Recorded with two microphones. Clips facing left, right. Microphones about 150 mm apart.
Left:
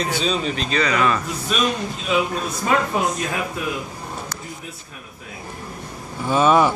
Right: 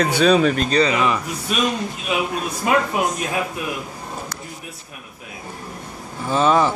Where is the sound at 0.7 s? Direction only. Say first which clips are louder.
Right 4 dB; 35° right (ahead or behind).